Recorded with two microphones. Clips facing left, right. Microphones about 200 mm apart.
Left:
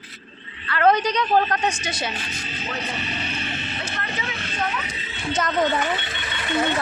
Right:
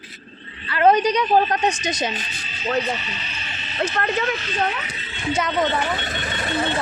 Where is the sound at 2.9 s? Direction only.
55° left (ahead or behind).